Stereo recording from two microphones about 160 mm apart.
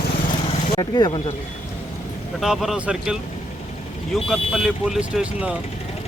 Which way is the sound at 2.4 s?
Centre (ahead or behind).